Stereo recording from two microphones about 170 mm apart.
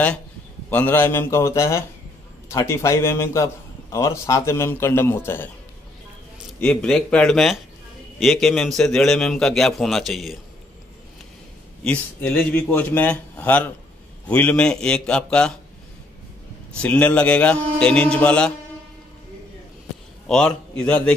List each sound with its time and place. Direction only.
0.7 s a man's voice: 10° left (ahead or behind)
6.6 s a man's voice: 5° left (ahead or behind)
11.8 s a man's voice: 5° left (ahead or behind)
16.7 s a man's voice: 5° left (ahead or behind)
20.2 s a man's voice: 5° left (ahead or behind)